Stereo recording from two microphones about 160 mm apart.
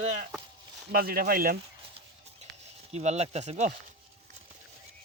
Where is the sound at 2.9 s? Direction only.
45° right (ahead or behind).